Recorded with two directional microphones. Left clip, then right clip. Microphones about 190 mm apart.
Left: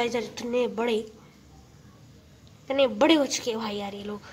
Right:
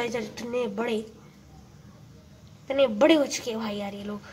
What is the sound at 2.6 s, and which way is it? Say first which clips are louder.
A woman's voice: right 1 dB; 5° left (ahead or behind).